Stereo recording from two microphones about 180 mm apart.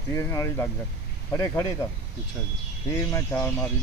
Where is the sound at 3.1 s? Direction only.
15° left (ahead or behind).